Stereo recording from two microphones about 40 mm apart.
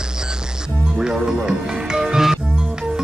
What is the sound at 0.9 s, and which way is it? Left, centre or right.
Music, centre.